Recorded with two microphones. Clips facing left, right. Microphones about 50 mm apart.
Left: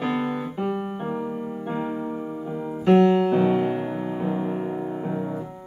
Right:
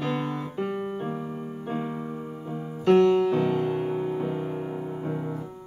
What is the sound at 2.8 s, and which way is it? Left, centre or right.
Music, centre.